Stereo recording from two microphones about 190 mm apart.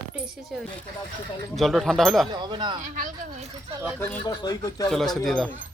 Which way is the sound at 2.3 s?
25° right (ahead or behind).